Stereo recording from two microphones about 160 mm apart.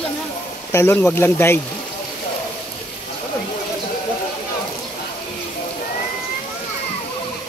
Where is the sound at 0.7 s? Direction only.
15° left (ahead or behind).